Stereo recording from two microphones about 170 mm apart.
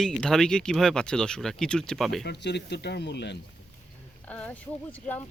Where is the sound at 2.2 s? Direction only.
85° left.